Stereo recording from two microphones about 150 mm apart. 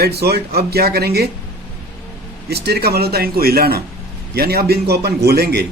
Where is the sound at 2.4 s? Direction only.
90° right.